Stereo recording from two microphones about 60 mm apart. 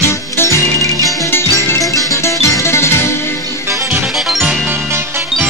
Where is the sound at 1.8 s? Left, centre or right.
Left.